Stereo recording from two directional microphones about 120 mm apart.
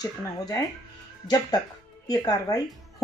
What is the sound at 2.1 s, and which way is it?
Speech, 30° left (ahead or behind).